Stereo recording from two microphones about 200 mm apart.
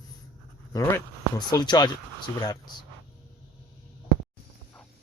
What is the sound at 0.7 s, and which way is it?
Speech, 15° left (ahead or behind).